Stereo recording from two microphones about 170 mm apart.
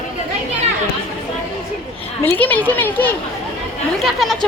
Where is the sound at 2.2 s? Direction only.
10° left (ahead or behind).